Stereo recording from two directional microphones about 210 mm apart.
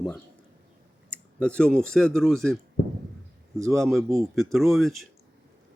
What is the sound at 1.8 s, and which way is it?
Speech, 5° left (ahead or behind).